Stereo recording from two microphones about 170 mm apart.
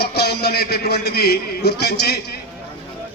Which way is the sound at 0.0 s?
70° left (ahead or behind).